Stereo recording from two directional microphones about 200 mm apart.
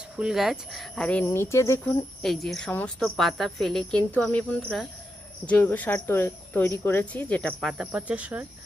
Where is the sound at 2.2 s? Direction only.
Centre (ahead or behind).